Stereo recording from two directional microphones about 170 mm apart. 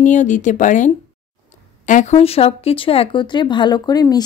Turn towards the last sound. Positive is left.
turn(degrees=20)  # may be behind; listen again after turning